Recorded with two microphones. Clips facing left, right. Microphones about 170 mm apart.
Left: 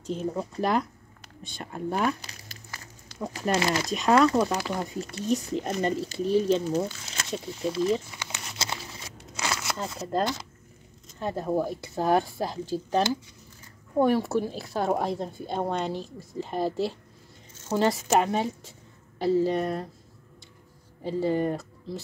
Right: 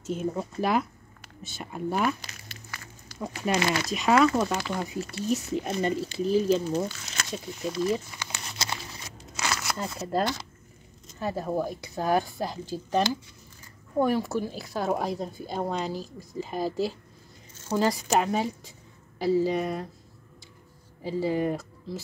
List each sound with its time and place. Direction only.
0.3 s speech: 5° right (ahead or behind)
2.3 s a sound: 40° left (ahead or behind)
3.2 s speech: 5° right (ahead or behind)
6.9 s speech: 25° left (ahead or behind)
8.1 s crumpling: 20° left (ahead or behind)
9.4 s a sound: 25° left (ahead or behind)
9.9 s speech: 5° right (ahead or behind)
14.0 s speech: centre (ahead or behind)
21.0 s speech: 5° right (ahead or behind)